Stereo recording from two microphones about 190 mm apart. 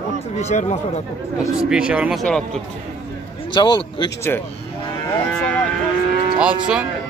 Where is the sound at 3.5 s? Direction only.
25° left (ahead or behind).